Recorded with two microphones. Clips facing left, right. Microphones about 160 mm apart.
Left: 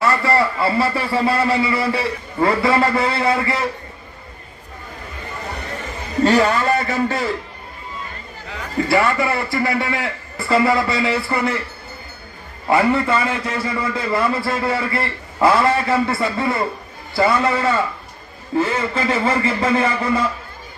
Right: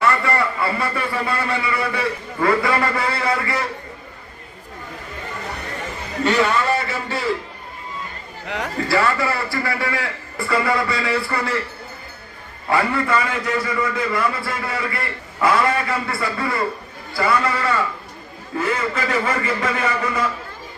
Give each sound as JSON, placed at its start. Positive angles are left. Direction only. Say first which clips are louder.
{"t": 0.0, "sound": "a man's voice", "louder": "left 2 dB", "side_deg": 30}
{"t": 6.2, "sound": "a man's voice", "louder": "left 3 dB", "side_deg": 40}
{"t": 8.4, "sound": "a man's voice", "louder": "right 6 dB", "side_deg": -75}
{"t": 8.9, "sound": "a man's voice", "louder": "left 2 dB", "side_deg": 20}
{"t": 12.6, "sound": "a man's voice", "louder": "left 4 dB", "side_deg": 25}